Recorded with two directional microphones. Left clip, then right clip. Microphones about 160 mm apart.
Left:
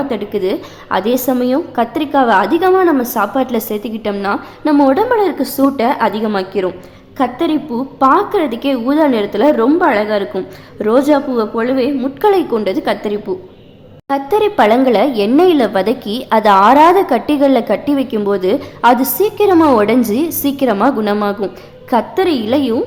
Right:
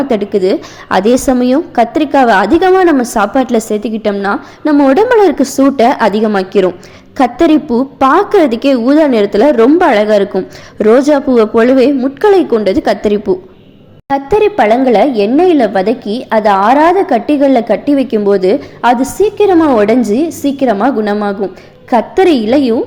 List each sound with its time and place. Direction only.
0.1 s a woman's voice: 20° right (ahead or behind)
11.9 s a woman's voice: 15° right (ahead or behind)
14.1 s a woman's voice: 10° right (ahead or behind); by 21.6 s 10° left (ahead or behind)
21.8 s a woman's voice: 10° right (ahead or behind)